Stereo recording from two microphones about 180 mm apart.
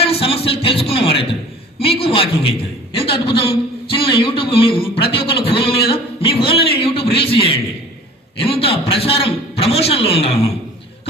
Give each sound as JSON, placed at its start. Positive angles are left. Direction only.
{"t": 0.0, "sound": "music", "side_deg": 35}
{"t": 0.6, "sound": "a man's voice", "side_deg": 30}